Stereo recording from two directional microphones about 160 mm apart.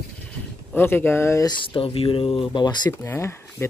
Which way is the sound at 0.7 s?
15° left (ahead or behind).